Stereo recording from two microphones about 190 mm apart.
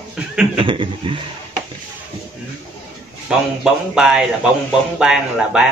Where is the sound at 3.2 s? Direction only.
5° right (ahead or behind).